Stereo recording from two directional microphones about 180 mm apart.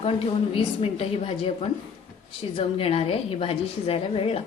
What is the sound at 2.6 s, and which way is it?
A woman's voice, 35° left (ahead or behind).